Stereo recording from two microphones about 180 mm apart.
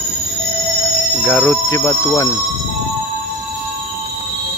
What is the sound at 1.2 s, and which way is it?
Speech, 10° left (ahead or behind).